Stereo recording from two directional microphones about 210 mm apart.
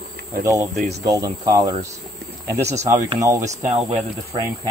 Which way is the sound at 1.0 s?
15° right (ahead or behind).